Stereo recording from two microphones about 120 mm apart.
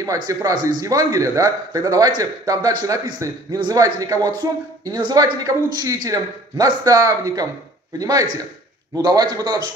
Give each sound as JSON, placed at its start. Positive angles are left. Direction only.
{"t": 0.3, "sound": "a man's voice", "side_deg": -30}